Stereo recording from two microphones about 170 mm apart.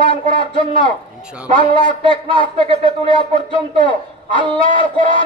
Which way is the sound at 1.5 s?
30° left (ahead or behind).